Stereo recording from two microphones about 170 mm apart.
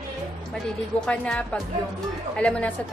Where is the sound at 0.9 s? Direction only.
5° left (ahead or behind).